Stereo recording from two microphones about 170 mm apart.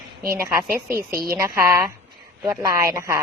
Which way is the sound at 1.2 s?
15° right (ahead or behind).